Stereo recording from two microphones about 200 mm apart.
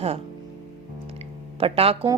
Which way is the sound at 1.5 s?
30° right (ahead or behind).